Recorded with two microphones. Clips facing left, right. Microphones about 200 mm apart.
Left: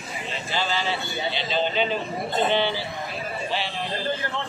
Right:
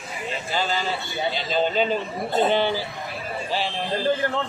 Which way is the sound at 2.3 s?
45° right (ahead or behind).